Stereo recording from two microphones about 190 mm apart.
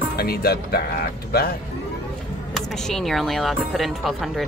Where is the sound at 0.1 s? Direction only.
55° left (ahead or behind).